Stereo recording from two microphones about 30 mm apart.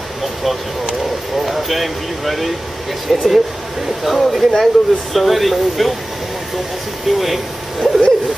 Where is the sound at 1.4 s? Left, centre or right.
Centre.